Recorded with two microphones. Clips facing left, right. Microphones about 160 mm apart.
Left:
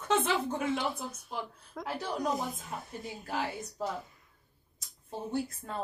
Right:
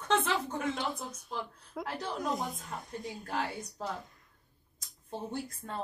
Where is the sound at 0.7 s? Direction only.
5° left (ahead or behind).